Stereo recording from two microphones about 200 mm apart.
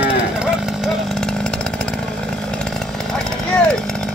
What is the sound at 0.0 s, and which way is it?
Chainsaw, 5° right (ahead or behind).